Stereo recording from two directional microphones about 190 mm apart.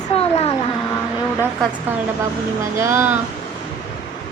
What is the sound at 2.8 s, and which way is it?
Speech, 15° right (ahead or behind).